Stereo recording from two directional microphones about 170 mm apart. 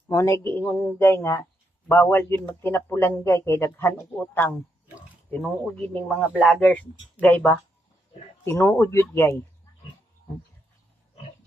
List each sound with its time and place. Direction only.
0.1 s speech: 15° left (ahead or behind)